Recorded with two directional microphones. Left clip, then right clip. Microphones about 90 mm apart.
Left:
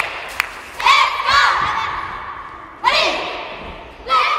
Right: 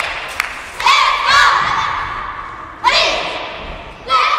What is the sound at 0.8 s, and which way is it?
Battle cry, 40° right (ahead or behind).